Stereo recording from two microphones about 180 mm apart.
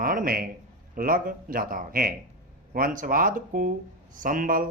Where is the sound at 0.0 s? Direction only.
50° right (ahead or behind).